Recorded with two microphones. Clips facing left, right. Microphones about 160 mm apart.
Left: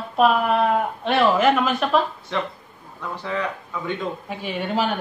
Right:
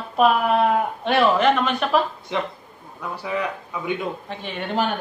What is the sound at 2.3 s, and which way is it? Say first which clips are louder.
Speech: even; 15° right (ahead or behind).